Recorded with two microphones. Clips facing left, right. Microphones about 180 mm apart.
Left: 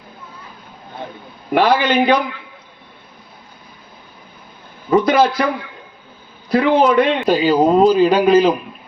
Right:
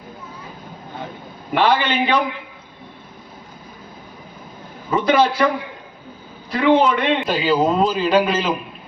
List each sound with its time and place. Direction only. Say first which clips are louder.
1.5 s a man's voice: left 3 dB; 40° left (ahead or behind)
4.9 s a man's voice: left 3 dB; 40° left (ahead or behind)
6.5 s a man's voice: left 2 dB; 40° left (ahead or behind)